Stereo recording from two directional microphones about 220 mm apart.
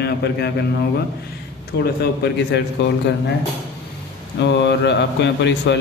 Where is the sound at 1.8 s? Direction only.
45° left (ahead or behind).